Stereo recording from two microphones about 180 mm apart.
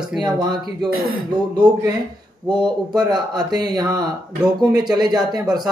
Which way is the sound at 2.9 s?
25° right (ahead or behind).